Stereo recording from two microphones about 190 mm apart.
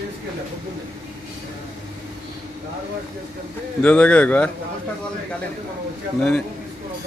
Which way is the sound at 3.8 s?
5° left (ahead or behind).